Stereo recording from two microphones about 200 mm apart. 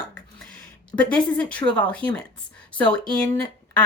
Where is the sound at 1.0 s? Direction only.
5° left (ahead or behind).